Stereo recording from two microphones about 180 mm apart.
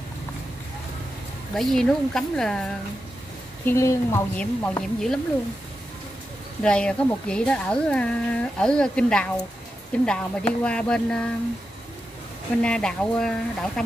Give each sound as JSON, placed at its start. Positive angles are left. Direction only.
{"t": 1.5, "sound": "a woman's voice", "side_deg": 0}
{"t": 3.6, "sound": "a woman's voice", "side_deg": 15}
{"t": 6.6, "sound": "a woman's voice", "side_deg": 5}
{"t": 12.6, "sound": "a woman's voice", "side_deg": 5}